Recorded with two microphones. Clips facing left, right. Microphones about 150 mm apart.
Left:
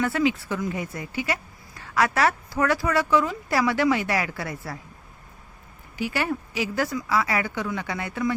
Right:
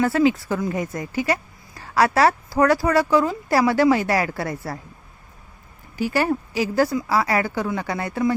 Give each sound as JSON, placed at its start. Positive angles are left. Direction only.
{"t": 0.0, "sound": "a woman's voice", "side_deg": -40}
{"t": 6.0, "sound": "a woman's voice", "side_deg": -40}